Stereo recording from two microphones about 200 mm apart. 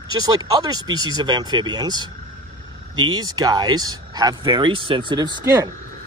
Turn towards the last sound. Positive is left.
turn(degrees=-20)  # may be behind; listen again after turning